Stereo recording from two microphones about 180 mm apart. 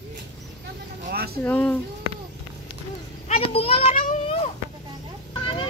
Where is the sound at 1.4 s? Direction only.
10° left (ahead or behind).